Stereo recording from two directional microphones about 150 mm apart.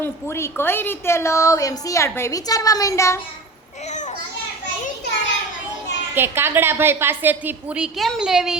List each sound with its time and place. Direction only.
0.0 s a woman's voice: 15° left (ahead or behind)
3.8 s children playing: 55° left (ahead or behind)
6.1 s a woman's voice: 15° right (ahead or behind)